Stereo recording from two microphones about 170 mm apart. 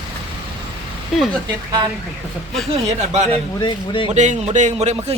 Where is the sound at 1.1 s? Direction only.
Centre (ahead or behind).